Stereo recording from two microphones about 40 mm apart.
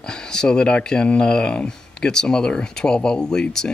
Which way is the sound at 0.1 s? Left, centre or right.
Centre.